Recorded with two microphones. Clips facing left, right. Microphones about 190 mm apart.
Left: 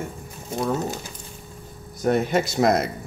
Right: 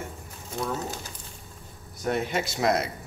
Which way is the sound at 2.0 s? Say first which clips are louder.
Left 6 dB; 45° left (ahead or behind).